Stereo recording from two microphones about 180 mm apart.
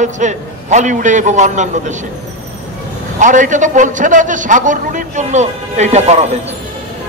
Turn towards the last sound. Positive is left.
turn(degrees=-40)  # may be behind; listen again after turning